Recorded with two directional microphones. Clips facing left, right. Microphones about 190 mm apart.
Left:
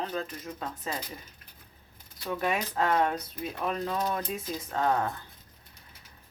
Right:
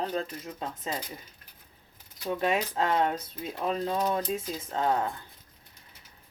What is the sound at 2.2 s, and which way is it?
Speech, 25° right (ahead or behind).